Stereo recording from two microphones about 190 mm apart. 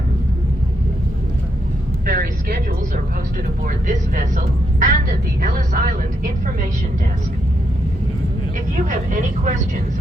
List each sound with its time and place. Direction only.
2.0 s vehicle: 50° right (ahead or behind)
3.7 s a woman's voice: 45° right (ahead or behind)
8.7 s speech: 40° right (ahead or behind)